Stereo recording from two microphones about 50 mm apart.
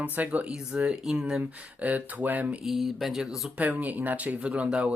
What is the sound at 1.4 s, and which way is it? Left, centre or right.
Speech, right.